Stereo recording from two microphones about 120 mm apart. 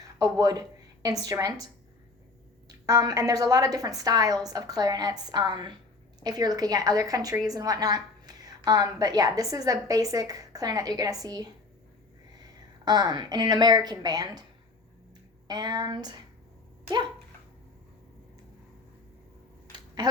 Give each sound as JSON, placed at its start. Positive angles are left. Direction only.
{"t": 0.2, "sound": "a woman's voice", "side_deg": -30}
{"t": 12.8, "sound": "a woman's voice", "side_deg": -35}
{"t": 15.4, "sound": "a woman's voice", "side_deg": -35}
{"t": 20.0, "sound": "speech", "side_deg": -35}